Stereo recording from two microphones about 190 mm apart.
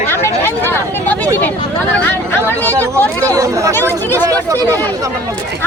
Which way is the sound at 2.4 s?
10° left (ahead or behind).